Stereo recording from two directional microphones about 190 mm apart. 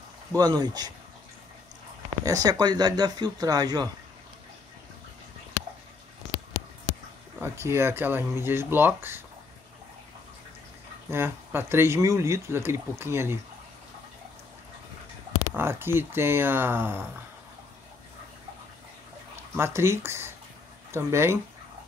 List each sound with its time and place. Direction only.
0.3 s speech: 20° right (ahead or behind)
2.2 s speech: 20° right (ahead or behind)
7.3 s speech: 10° right (ahead or behind)
11.1 s speech: 10° right (ahead or behind)
15.5 s speech: 10° right (ahead or behind)
19.5 s speech: 15° right (ahead or behind)